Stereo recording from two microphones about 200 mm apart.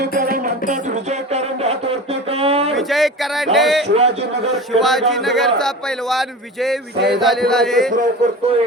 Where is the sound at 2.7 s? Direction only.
Centre (ahead or behind).